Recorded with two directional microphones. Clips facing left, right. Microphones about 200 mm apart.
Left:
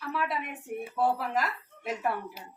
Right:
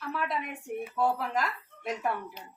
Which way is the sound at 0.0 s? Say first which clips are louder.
Left 1 dB; 5° left (ahead or behind).